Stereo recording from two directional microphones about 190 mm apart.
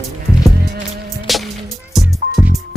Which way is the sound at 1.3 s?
Centre (ahead or behind).